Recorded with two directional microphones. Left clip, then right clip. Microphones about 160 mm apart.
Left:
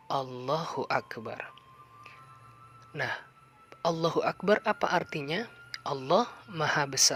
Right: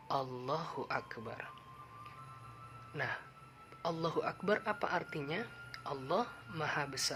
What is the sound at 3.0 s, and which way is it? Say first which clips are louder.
Speech: left 6 dB; 45° left (ahead or behind).